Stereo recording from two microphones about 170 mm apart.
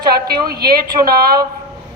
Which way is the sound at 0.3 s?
65° right (ahead or behind).